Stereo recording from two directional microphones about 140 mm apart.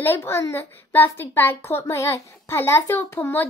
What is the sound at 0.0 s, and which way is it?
A child's voice, 15° left (ahead or behind).